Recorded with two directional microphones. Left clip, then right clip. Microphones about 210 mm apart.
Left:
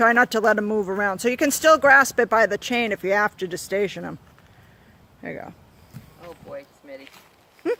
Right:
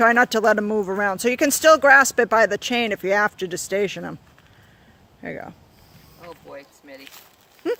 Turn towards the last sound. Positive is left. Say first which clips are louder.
# even
turn(degrees=-5)  # may be behind; listen again after turning